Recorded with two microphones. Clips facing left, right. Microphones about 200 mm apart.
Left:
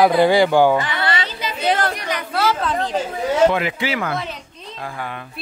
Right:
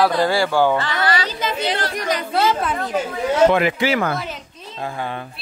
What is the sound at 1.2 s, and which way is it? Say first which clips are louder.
Chatter: right 3 dB; 45° right (ahead or behind).